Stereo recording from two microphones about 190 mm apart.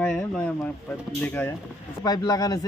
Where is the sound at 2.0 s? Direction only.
20° left (ahead or behind).